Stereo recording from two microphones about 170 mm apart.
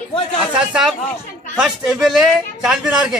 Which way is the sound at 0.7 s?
5° right (ahead or behind).